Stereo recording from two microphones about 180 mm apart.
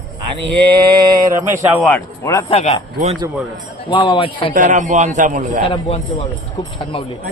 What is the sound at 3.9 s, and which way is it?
Speech, 25° left (ahead or behind).